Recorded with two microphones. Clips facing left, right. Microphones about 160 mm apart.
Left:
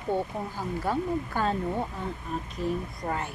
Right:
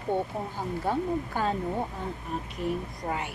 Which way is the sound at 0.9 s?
15° right (ahead or behind).